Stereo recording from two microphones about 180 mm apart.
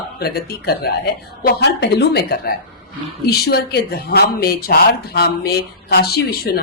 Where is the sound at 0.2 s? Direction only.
60° left (ahead or behind).